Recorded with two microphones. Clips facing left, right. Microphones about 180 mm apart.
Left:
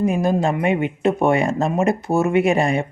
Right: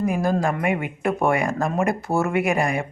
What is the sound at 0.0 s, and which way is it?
Speech, 20° left (ahead or behind).